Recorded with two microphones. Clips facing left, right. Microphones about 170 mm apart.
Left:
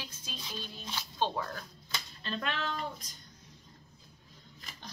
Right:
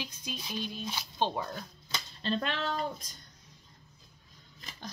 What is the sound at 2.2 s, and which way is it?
Speech, 35° right (ahead or behind).